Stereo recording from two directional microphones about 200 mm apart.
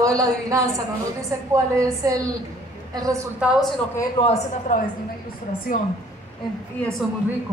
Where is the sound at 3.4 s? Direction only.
5° right (ahead or behind).